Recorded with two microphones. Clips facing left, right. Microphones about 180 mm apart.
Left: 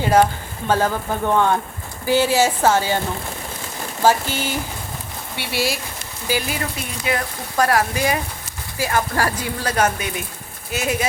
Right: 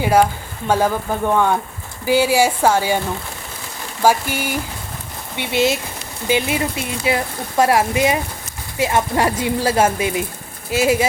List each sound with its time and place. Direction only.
0.0 s speech: 10° right (ahead or behind)
1.3 s speech: 10° right (ahead or behind)
4.0 s speech: 10° right (ahead or behind)